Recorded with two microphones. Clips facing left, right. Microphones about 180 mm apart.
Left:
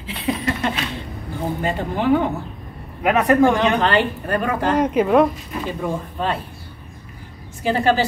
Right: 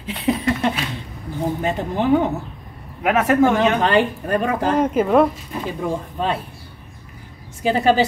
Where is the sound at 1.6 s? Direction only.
Centre (ahead or behind).